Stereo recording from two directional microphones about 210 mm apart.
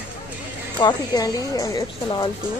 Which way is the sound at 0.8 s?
20° left (ahead or behind).